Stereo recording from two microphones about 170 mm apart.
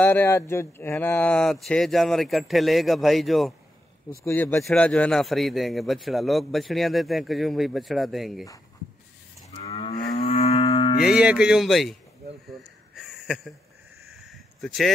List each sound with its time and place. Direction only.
0.0 s speech: 10° left (ahead or behind)
4.2 s speech: 10° left (ahead or behind)
9.6 s livestock: 35° left (ahead or behind)
11.1 s speech: 5° right (ahead or behind)
12.5 s snort: centre (ahead or behind)
14.0 s a sound: centre (ahead or behind)